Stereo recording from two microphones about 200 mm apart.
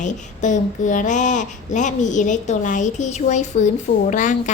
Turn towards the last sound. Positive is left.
turn(degrees=40)  # may be behind; listen again after turning